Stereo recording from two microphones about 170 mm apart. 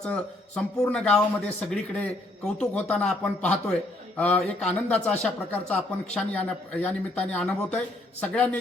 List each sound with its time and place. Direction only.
0.0 s speech: 5° left (ahead or behind)